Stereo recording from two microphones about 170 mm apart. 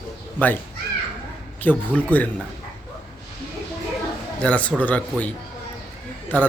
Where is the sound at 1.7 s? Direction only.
10° left (ahead or behind).